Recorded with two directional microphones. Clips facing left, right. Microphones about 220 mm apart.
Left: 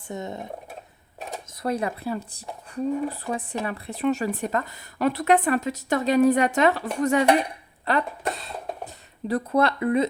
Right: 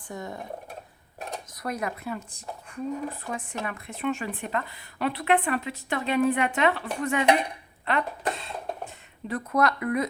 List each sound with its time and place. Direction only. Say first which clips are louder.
0.1 s speech: left 4 dB; 20° left (ahead or behind)
1.5 s a woman's voice: left 6 dB; 30° left (ahead or behind)
7.9 s a sound: left 2 dB; 35° left (ahead or behind)
9.2 s speech: left 3 dB; 35° left (ahead or behind)